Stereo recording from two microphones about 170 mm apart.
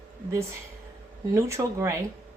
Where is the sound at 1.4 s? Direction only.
15° right (ahead or behind).